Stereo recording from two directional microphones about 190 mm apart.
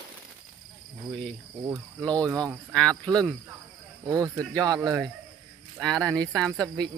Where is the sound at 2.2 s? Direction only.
20° right (ahead or behind).